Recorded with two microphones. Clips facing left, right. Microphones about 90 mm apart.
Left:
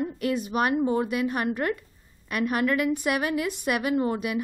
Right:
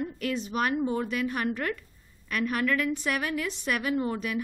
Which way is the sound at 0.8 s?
20° left (ahead or behind).